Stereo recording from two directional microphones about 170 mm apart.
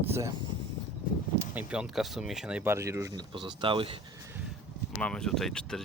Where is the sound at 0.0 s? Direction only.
15° right (ahead or behind).